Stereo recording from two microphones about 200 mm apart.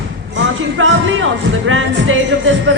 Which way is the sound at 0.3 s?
80° right.